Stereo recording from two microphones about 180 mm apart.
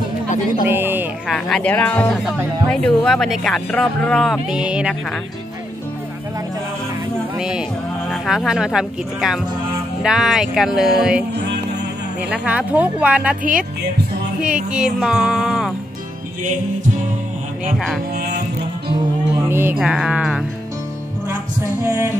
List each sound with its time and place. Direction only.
0.7 s speech: 10° right (ahead or behind)
1.3 s speech: 5° left (ahead or behind)
7.3 s music: 5° right (ahead or behind)
8.1 s speech: centre (ahead or behind)
13.4 s speech: 50° right (ahead or behind)
14.4 s speech: 5° right (ahead or behind)
19.5 s speech: 10° right (ahead or behind)